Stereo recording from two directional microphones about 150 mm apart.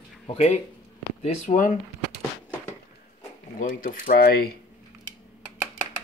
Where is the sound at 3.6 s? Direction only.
65° left (ahead or behind); by 4.4 s 90° left.